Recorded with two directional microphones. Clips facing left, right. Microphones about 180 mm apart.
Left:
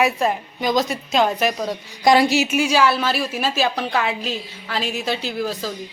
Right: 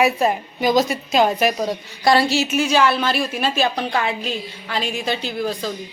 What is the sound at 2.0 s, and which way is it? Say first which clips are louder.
A woman's voice: left 1 dB; 15° left (ahead or behind).